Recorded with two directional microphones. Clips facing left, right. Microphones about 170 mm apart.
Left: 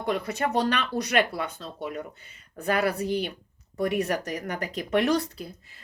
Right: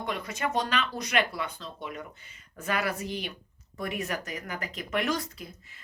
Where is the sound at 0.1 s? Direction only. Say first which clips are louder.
Left 5 dB; 35° left (ahead or behind).